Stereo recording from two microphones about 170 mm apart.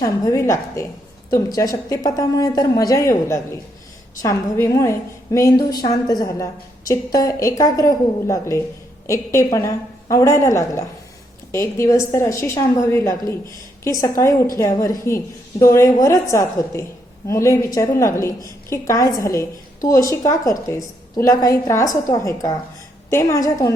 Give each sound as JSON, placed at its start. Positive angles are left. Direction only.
{"t": 0.0, "sound": "a woman's voice", "side_deg": 20}